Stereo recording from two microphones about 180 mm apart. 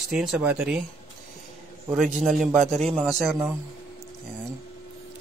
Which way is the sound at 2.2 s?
Centre (ahead or behind).